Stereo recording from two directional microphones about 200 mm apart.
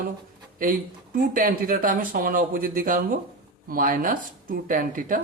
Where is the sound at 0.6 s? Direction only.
45° right (ahead or behind).